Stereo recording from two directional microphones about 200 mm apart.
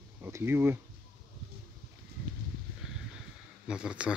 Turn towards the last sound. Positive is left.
turn(degrees=-5)  # may be behind; listen again after turning